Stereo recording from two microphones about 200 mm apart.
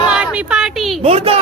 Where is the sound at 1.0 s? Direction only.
30° right (ahead or behind).